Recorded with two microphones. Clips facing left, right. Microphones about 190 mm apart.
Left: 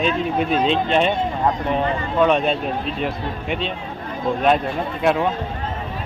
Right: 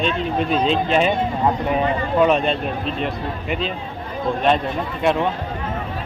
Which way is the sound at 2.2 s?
Centre (ahead or behind).